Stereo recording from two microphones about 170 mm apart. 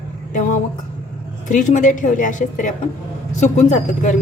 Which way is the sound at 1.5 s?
45° left (ahead or behind).